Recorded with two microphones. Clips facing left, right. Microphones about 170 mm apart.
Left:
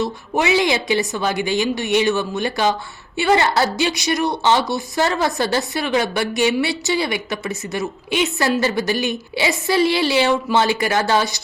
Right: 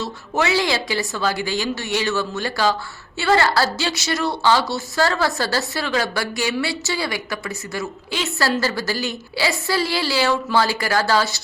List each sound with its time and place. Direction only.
0.0 s a woman's voice: 15° left (ahead or behind)